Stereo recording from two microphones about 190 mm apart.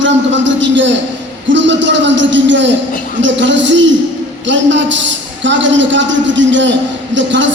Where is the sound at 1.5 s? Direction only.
70° right (ahead or behind).